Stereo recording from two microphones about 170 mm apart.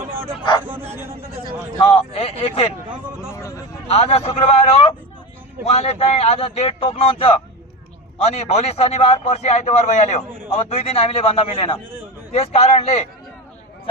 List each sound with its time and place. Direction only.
1.8 s a man's voice: 30° left (ahead or behind)
3.8 s a man's voice: 35° left (ahead or behind)